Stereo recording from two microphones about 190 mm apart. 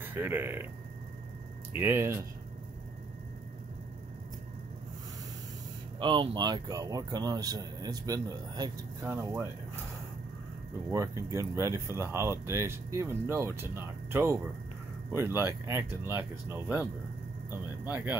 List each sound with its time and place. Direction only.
0.0 s speech: 10° right (ahead or behind)
1.7 s speech: 10° right (ahead or behind)
5.9 s speech: 25° right (ahead or behind)
11.3 s speech: 15° right (ahead or behind)